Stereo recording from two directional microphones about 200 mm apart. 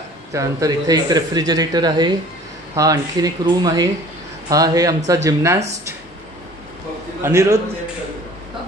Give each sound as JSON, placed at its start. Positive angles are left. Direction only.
{"t": 0.3, "sound": "speech", "side_deg": -15}
{"t": 7.2, "sound": "speech", "side_deg": -15}